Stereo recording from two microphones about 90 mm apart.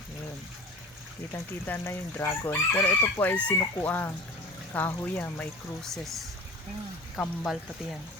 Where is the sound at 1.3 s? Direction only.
25° left (ahead or behind).